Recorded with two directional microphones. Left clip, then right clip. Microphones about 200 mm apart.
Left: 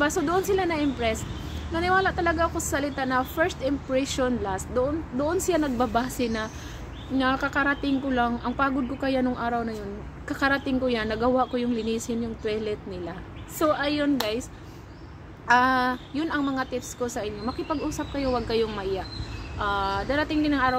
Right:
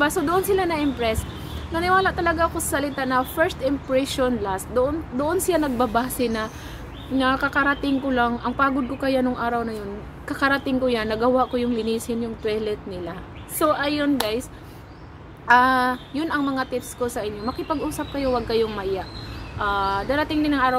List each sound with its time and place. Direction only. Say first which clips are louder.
0.0 s a woman's voice: right 3 dB; 5° right (ahead or behind)
15.4 s a woman's voice: right 4 dB; centre (ahead or behind)